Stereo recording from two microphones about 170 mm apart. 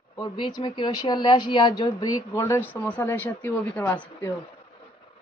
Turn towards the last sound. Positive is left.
turn(degrees=10)  # may be behind; listen again after turning